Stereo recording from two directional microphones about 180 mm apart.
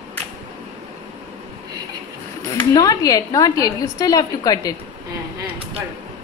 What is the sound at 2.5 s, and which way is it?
A woman's voice, 20° left (ahead or behind).